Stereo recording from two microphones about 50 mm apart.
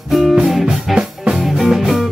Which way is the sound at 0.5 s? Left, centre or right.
Centre.